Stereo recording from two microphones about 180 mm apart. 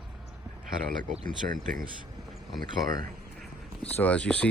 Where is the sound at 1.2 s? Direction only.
50° right (ahead or behind).